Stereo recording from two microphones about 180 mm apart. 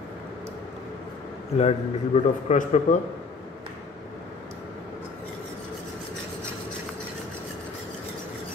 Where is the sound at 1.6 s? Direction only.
35° left (ahead or behind).